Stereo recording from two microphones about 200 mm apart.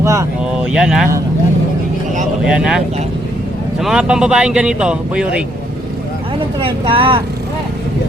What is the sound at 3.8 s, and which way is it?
A man's voice, 5° right (ahead or behind).